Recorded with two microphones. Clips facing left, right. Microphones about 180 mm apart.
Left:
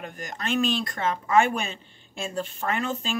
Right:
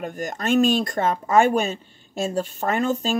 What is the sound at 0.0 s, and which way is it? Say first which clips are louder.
Speech: right 7 dB; 45° right (ahead or behind).